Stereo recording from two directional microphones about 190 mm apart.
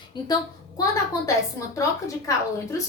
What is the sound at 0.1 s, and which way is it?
Speech, 25° left (ahead or behind).